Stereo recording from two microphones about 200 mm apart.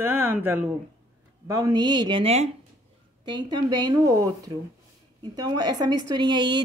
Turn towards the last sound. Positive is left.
turn(degrees=-20)  # may be behind; listen again after turning